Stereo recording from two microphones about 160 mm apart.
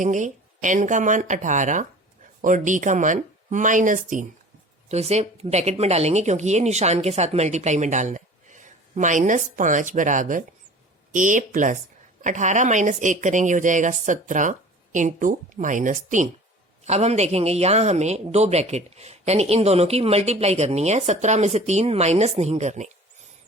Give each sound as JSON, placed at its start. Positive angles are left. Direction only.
{"t": 0.0, "sound": "a man's voice", "side_deg": -50}
{"t": 4.9, "sound": "a man's voice", "side_deg": -40}